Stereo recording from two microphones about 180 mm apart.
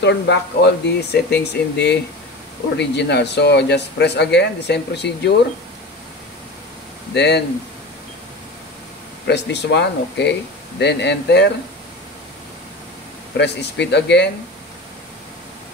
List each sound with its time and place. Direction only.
0.0 s speech: 75° left (ahead or behind)
7.2 s speech: 70° left (ahead or behind)
9.3 s speech: 70° left (ahead or behind)
13.4 s speech: 70° left (ahead or behind)